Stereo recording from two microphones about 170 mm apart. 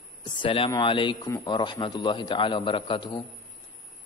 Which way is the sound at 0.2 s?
30° left (ahead or behind).